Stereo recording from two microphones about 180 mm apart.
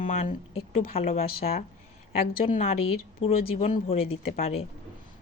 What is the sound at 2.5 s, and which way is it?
A woman's voice, 40° left (ahead or behind).